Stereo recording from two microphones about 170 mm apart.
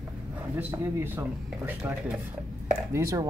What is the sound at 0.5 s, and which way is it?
Speech, 15° right (ahead or behind).